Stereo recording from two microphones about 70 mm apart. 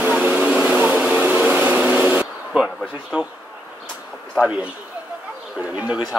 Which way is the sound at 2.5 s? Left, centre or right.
Centre.